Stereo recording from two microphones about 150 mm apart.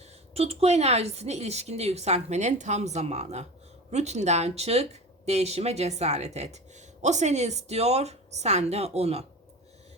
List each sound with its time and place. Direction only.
0.3 s speech: 40° right (ahead or behind)